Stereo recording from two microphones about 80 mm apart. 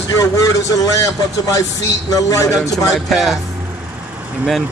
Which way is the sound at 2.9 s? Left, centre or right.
Centre.